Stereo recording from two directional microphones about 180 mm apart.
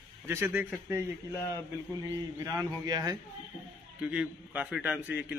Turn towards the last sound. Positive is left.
turn(degrees=-10)  # may be behind; listen again after turning